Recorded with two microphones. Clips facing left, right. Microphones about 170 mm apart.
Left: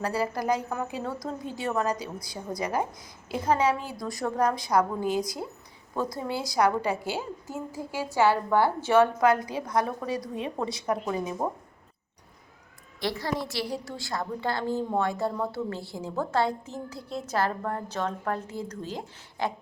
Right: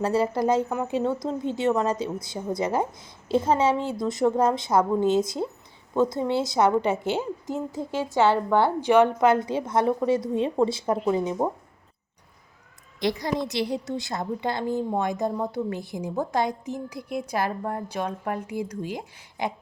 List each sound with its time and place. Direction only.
0.0 s a woman's voice: 25° right (ahead or behind)
13.0 s a woman's voice: 15° right (ahead or behind)